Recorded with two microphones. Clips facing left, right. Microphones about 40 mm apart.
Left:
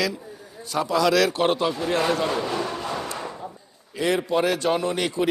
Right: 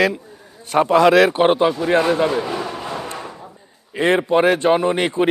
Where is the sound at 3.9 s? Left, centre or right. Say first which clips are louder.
Right 6 dB; right.